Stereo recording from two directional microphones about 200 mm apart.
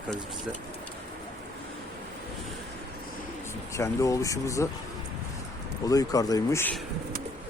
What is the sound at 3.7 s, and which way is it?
Speech, 15° left (ahead or behind).